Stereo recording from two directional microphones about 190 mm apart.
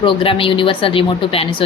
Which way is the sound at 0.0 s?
25° left (ahead or behind).